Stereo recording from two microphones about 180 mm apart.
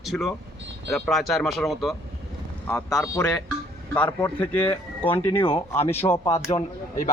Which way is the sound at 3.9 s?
10° left (ahead or behind).